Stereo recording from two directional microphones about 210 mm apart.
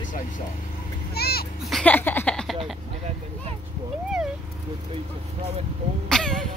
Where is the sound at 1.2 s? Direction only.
50° left (ahead or behind).